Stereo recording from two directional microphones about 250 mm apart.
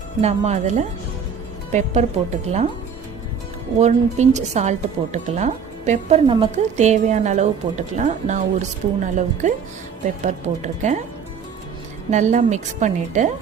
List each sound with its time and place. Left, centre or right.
0.2 s a woman's voice: right
3.8 s a woman's voice: right
12.1 s a woman's voice: right